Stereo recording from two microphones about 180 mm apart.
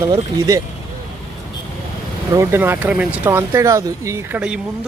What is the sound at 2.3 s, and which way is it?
Speech, 15° right (ahead or behind).